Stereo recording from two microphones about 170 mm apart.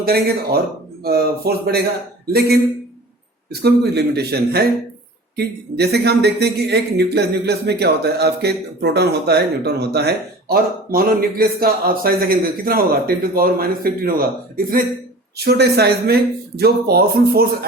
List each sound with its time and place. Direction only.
0.0 s speech: 65° right (ahead or behind)
3.5 s speech: 75° right (ahead or behind); by 14.8 s 60° right (ahead or behind)
15.4 s speech: 70° right (ahead or behind)